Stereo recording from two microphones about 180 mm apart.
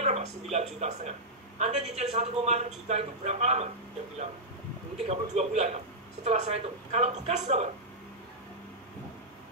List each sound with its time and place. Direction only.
0.0 s a woman's voice: 35° right (ahead or behind)
5.0 s a woman's voice: 40° right (ahead or behind)